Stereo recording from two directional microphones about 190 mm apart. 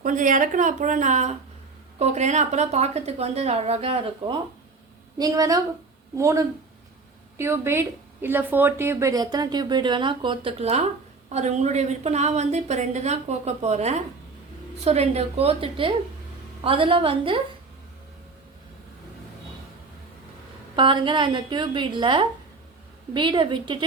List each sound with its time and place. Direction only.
0.0 s a woman's voice: 45° right (ahead or behind)
5.1 s a woman's voice: 20° right (ahead or behind)
20.7 s a woman's voice: 25° right (ahead or behind)